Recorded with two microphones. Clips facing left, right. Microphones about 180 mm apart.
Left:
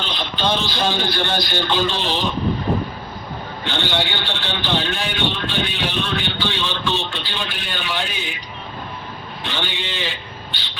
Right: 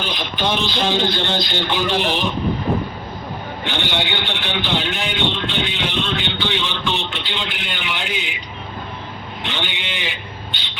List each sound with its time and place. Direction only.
0.0 s a man's voice: 15° right (ahead or behind)
3.6 s a man's voice: 15° right (ahead or behind)
9.4 s a man's voice: 20° right (ahead or behind)